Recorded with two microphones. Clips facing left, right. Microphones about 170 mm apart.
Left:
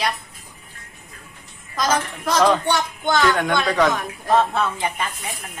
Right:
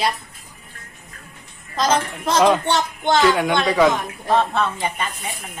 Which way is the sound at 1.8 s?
25° right (ahead or behind).